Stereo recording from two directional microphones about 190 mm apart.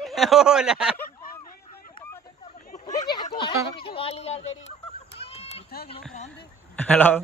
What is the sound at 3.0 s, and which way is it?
Speech, 20° left (ahead or behind).